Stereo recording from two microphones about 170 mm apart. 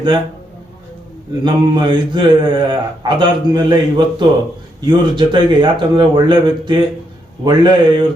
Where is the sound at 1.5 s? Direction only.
25° right (ahead or behind).